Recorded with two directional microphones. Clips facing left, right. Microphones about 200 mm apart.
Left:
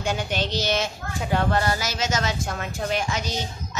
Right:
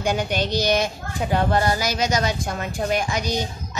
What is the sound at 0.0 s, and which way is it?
Speech, 15° right (ahead or behind).